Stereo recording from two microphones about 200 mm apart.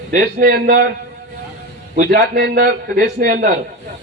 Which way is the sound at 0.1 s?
45° right (ahead or behind).